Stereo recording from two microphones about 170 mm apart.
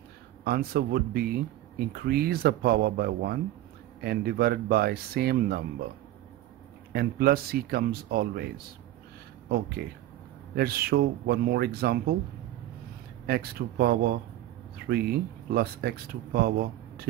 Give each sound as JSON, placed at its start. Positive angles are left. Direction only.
{"t": 0.4, "sound": "speech", "side_deg": -65}
{"t": 6.9, "sound": "speech", "side_deg": -65}
{"t": 10.5, "sound": "speech", "side_deg": -65}
{"t": 13.3, "sound": "speech", "side_deg": -65}